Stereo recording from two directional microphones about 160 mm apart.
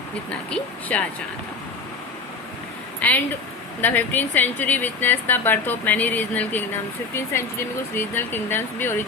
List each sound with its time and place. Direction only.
0.3 s speech: 10° left (ahead or behind)
3.8 s speech: 10° left (ahead or behind)